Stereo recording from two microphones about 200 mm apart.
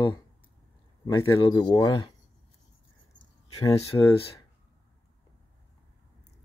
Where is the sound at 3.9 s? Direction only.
20° left (ahead or behind).